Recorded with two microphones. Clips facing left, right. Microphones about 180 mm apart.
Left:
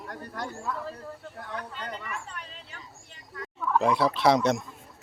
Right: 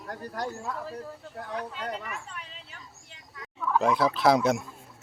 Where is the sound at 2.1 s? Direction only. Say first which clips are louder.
Left 1 dB; 5° right (ahead or behind).